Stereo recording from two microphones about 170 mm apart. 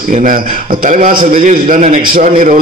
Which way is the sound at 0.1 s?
50° right (ahead or behind).